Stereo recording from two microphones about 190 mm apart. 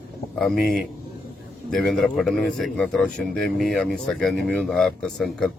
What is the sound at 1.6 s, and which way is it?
Speech, centre (ahead or behind).